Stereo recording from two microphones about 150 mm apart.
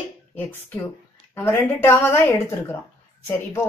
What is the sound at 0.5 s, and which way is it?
Speech, 15° left (ahead or behind).